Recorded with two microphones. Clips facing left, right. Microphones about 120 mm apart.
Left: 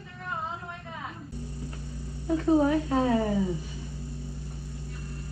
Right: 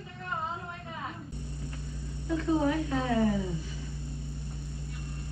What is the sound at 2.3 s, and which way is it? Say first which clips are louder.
A woman's voice: left 5 dB; 35° left (ahead or behind).